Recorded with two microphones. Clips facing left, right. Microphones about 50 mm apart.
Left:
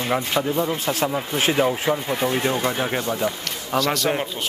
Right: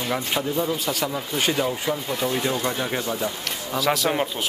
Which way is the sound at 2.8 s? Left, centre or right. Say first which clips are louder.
Left 3 dB; centre.